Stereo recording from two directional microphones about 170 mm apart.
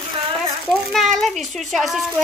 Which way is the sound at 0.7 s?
Centre (ahead or behind).